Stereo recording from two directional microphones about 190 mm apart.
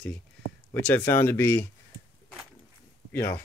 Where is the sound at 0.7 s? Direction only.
10° left (ahead or behind).